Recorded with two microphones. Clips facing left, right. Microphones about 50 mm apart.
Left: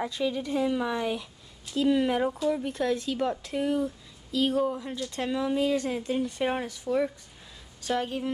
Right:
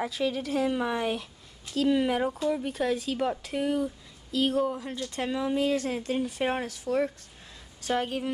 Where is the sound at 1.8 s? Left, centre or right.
Centre.